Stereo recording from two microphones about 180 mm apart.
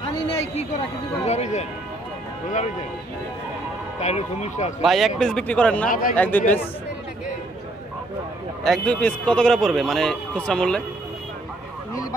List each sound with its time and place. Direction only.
0.0 s a sound: 35° left (ahead or behind)
1.2 s speech: 40° left (ahead or behind)
4.0 s speech: 35° left (ahead or behind)
4.8 s a man's voice: centre (ahead or behind)
5.9 s a man's voice: 50° left (ahead or behind)
6.1 s a man's voice: 10° left (ahead or behind)
8.6 s a man's voice: 5° left (ahead or behind)